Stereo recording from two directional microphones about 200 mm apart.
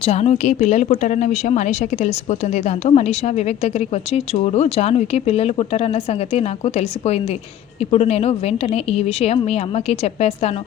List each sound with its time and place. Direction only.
0.0 s a woman's voice: 30° left (ahead or behind)